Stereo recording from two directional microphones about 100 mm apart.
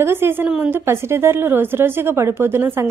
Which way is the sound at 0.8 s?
25° right (ahead or behind).